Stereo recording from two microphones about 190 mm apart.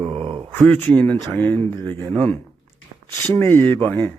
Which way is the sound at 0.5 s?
5° left (ahead or behind).